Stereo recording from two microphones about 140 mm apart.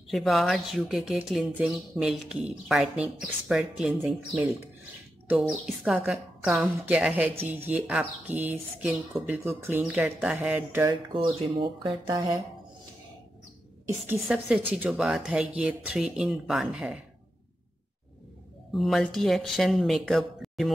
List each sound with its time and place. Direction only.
0.1 s speech: centre (ahead or behind)
5.3 s speech: 5° right (ahead or behind)
11.1 s speech: 40° right (ahead or behind)
14.2 s speech: 10° right (ahead or behind)
18.7 s speech: centre (ahead or behind)